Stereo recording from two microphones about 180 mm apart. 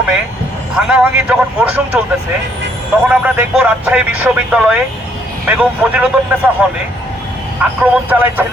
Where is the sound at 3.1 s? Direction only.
10° right (ahead or behind).